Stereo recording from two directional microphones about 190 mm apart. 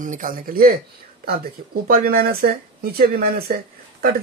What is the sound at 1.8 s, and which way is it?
Speech, 50° right (ahead or behind).